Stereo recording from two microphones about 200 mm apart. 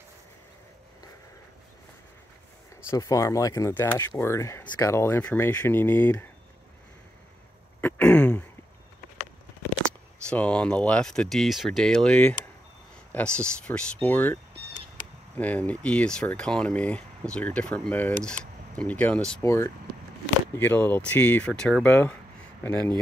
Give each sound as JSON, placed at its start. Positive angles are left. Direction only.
{"t": 2.9, "sound": "speech", "side_deg": 15}
{"t": 7.8, "sound": "a sound", "side_deg": 5}
{"t": 10.3, "sound": "speech", "side_deg": 5}